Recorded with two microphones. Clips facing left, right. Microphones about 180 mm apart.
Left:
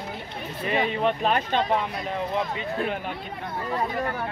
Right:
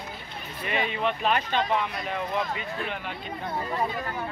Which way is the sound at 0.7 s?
40° left (ahead or behind).